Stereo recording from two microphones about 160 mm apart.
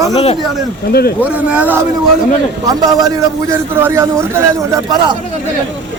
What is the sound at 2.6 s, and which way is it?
A man's voice, 20° right (ahead or behind).